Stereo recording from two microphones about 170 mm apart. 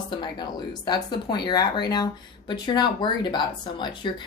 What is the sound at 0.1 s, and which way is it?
Speech, 25° left (ahead or behind).